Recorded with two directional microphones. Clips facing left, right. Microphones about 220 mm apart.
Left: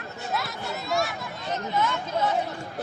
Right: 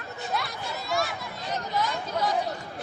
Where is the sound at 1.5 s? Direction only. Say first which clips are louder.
Left 2 dB; 35° right (ahead or behind).